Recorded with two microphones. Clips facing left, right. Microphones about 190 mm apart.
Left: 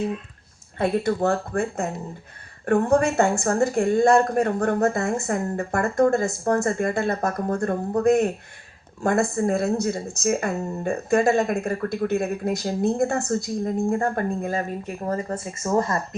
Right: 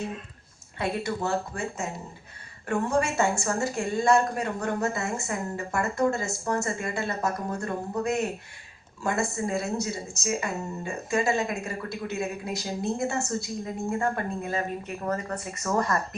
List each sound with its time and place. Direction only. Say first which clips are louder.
0.8 s speech: left 7 dB; 55° left (ahead or behind); by 16.0 s 25° left (ahead or behind)